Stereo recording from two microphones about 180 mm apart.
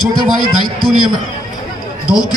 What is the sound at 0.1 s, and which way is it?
Speech, 25° left (ahead or behind).